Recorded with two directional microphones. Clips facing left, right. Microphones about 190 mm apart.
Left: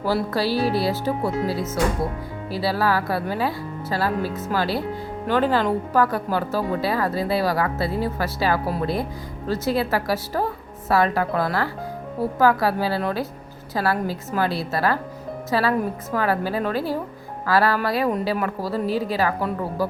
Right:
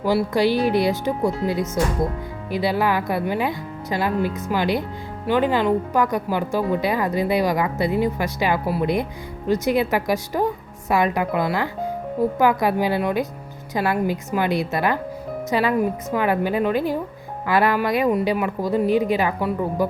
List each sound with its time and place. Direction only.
0.0 s speech: 15° right (ahead or behind)
2.5 s speech: 20° right (ahead or behind)